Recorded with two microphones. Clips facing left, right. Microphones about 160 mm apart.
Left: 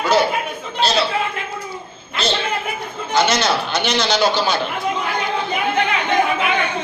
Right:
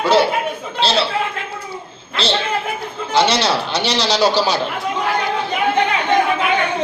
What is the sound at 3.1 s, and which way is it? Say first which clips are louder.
A man's voice: right 1 dB; 30° right (ahead or behind).